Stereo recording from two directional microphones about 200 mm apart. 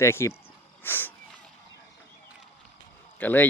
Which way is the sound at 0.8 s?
10° left (ahead or behind).